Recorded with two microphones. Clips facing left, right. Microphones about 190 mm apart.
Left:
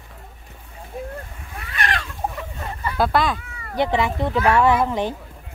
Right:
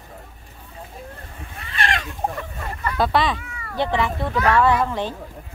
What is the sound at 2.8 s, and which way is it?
Speech, centre (ahead or behind).